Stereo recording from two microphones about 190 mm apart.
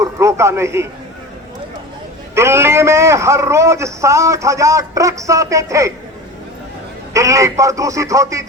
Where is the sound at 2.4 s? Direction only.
15° right (ahead or behind).